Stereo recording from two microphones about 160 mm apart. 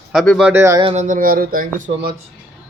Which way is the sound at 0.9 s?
50° right (ahead or behind).